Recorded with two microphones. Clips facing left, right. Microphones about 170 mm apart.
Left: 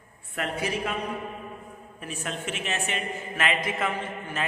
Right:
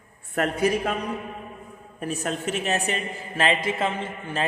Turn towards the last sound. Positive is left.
turn(degrees=-30)  # may be behind; listen again after turning